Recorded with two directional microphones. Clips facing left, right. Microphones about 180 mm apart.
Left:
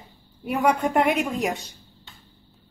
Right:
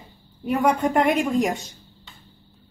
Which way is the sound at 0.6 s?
Centre (ahead or behind).